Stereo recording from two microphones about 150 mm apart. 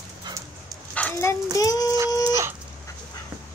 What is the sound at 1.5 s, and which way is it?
Speech, 25° left (ahead or behind).